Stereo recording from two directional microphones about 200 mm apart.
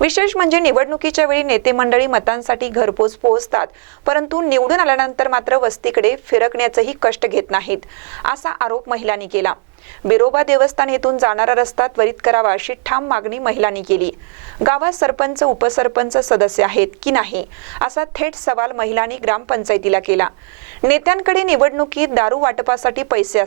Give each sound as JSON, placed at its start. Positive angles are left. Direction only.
{"t": 0.0, "sound": "a woman's voice", "side_deg": -15}